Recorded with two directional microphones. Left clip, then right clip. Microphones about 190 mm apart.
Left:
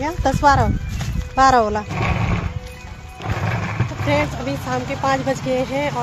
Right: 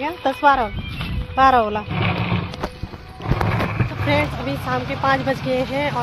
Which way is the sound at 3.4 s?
45° right (ahead or behind).